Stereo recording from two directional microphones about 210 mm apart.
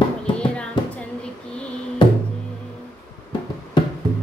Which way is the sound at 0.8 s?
25° left (ahead or behind).